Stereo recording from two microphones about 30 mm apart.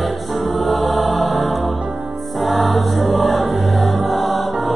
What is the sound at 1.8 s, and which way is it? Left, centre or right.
Music, centre.